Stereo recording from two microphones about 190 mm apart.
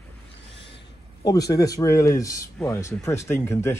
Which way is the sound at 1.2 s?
20° left (ahead or behind).